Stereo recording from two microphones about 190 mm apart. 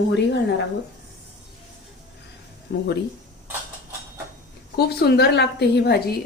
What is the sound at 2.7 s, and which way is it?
Speech, 65° left (ahead or behind).